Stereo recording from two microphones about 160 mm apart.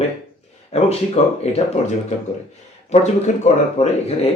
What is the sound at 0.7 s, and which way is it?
Speech, 40° left (ahead or behind).